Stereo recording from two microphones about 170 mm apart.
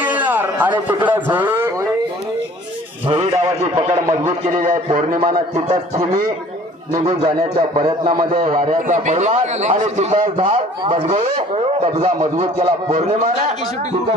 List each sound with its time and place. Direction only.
0.2 s a sound: 10° right (ahead or behind)
1.0 s a man's voice: 10° right (ahead or behind)
3.2 s a man's voice: 45° right (ahead or behind)
7.7 s speech: 30° right (ahead or behind)
8.2 s a man's voice: 50° right (ahead or behind)
12.2 s speech: 25° right (ahead or behind)